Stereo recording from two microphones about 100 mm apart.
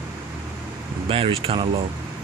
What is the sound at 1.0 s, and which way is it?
Speech, 65° right (ahead or behind).